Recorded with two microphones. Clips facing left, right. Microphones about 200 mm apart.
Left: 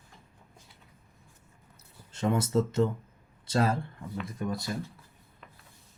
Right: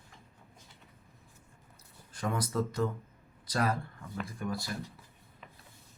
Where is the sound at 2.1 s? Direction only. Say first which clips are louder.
Left 6 dB; 25° left (ahead or behind).